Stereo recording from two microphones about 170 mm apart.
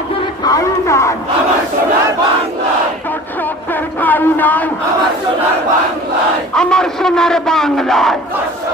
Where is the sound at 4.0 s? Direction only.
10° left (ahead or behind).